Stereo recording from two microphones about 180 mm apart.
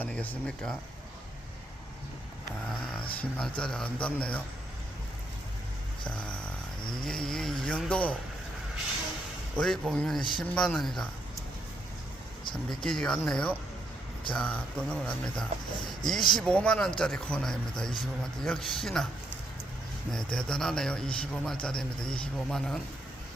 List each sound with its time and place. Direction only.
0.0 s a man's voice: 10° left (ahead or behind)
2.6 s a sound: 5° left (ahead or behind)
3.6 s speech: 5° left (ahead or behind)
6.1 s a man's voice: 5° left (ahead or behind)
9.6 s a man's voice: 5° left (ahead or behind)
10.2 s speech: 25° left (ahead or behind)
10.4 s a man's voice: 5° left (ahead or behind)
12.7 s a man's voice: 5° left (ahead or behind)
20.1 s a man's voice: 5° left (ahead or behind)